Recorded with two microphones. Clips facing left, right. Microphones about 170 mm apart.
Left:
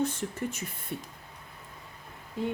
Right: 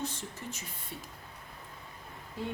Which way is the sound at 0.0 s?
55° left (ahead or behind).